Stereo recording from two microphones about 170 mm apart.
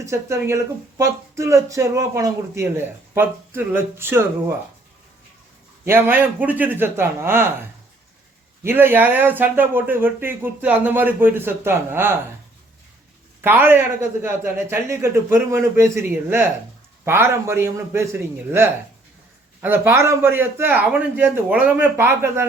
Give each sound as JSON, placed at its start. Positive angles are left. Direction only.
{"t": 0.0, "sound": "speech", "side_deg": -15}
{"t": 5.8, "sound": "speech", "side_deg": -10}
{"t": 8.6, "sound": "speech", "side_deg": -10}
{"t": 13.4, "sound": "speech", "side_deg": -10}